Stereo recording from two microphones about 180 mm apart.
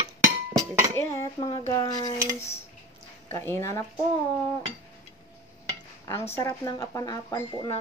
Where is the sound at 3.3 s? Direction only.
15° left (ahead or behind).